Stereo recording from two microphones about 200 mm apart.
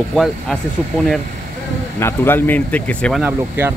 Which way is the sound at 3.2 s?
10° right (ahead or behind).